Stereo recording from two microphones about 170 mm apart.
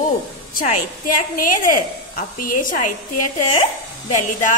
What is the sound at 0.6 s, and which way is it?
A woman's voice, 55° left (ahead or behind).